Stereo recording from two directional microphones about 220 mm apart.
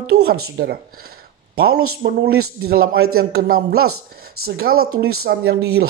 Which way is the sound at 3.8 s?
75° right (ahead or behind).